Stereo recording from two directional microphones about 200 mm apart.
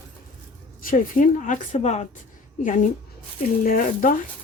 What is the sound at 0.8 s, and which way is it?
A woman's voice, 45° left (ahead or behind).